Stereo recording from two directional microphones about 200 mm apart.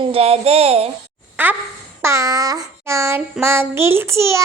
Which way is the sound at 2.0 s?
15° right (ahead or behind).